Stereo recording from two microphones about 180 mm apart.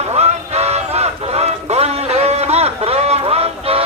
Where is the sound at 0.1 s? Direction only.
35° right (ahead or behind).